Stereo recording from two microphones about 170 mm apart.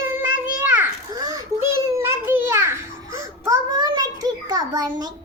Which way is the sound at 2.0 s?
10° right (ahead or behind).